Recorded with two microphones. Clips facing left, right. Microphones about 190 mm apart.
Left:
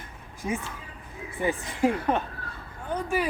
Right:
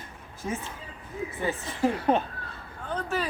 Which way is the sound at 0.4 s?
15° left (ahead or behind).